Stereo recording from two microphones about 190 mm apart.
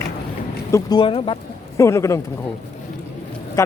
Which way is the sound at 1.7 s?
15° left (ahead or behind).